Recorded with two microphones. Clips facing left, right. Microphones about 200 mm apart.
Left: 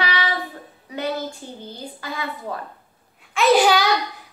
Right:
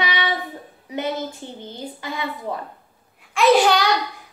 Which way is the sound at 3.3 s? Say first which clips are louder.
Right 1 dB; centre (ahead or behind).